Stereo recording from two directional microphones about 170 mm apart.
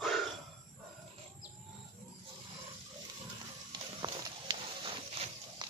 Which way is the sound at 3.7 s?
25° right (ahead or behind).